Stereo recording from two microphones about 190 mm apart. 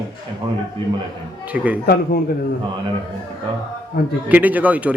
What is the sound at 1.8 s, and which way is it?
Speech, 55° left (ahead or behind).